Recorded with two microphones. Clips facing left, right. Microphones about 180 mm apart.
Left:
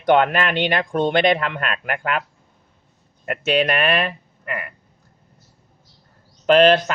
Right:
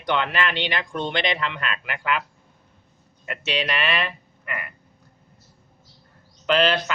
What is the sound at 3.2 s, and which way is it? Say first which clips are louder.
Speech: left 8 dB; 50° left (ahead or behind).